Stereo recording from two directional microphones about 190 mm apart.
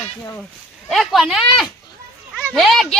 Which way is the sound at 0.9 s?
Centre (ahead or behind).